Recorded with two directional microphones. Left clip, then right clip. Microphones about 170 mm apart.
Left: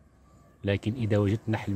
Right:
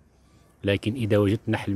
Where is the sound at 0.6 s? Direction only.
20° right (ahead or behind).